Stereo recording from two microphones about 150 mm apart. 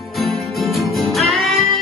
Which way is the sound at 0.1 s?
Centre (ahead or behind).